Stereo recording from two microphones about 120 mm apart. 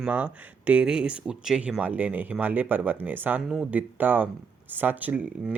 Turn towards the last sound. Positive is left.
turn(degrees=-15)  # may be behind; listen again after turning